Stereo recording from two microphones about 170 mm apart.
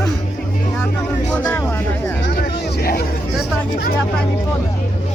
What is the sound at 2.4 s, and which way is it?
Vehicle, 65° left (ahead or behind).